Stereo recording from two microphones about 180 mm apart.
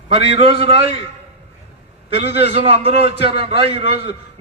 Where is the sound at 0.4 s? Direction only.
30° right (ahead or behind).